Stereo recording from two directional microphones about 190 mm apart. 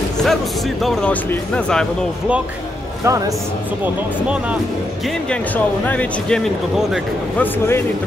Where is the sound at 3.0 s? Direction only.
15° right (ahead or behind).